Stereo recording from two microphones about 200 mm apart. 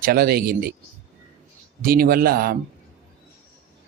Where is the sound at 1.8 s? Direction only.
45° right (ahead or behind).